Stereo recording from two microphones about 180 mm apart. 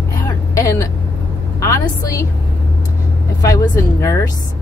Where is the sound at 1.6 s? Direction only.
15° left (ahead or behind).